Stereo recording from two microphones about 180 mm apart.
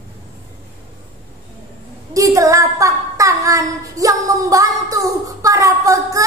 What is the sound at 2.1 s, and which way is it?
Child singing, 20° right (ahead or behind).